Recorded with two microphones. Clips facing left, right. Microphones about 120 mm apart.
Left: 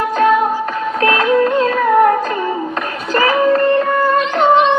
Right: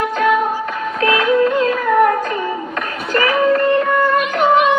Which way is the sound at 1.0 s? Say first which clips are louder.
Left 1 dB; 30° left (ahead or behind).